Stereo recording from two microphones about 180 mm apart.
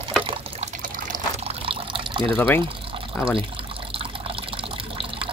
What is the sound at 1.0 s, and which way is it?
Water, 45° right (ahead or behind).